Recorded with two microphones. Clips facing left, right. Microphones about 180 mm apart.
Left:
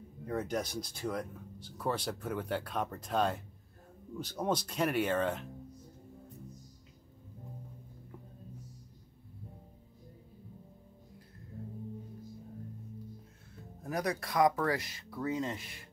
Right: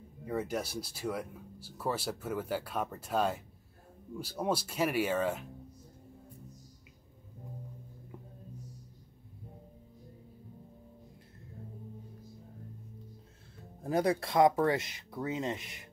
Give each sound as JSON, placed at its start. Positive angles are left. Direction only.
{"t": 0.2, "sound": "speech", "side_deg": -5}
{"t": 13.8, "sound": "speech", "side_deg": -30}